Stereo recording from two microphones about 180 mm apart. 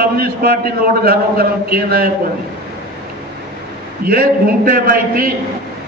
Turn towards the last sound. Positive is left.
turn(degrees=-55)  # may be behind; listen again after turning